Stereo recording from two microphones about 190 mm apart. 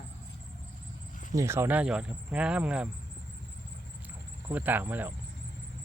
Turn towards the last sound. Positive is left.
turn(degrees=-10)  # may be behind; listen again after turning